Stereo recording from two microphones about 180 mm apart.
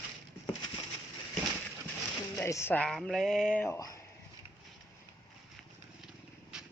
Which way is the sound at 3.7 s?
20° left (ahead or behind).